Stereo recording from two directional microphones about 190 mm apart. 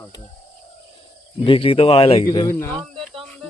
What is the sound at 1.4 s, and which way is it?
Speech, 30° left (ahead or behind).